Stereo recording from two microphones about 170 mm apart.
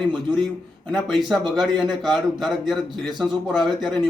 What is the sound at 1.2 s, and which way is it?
A man's voice, centre (ahead or behind).